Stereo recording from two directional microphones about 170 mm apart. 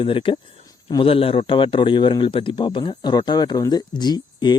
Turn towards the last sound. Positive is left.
turn(degrees=25)  # may be behind; listen again after turning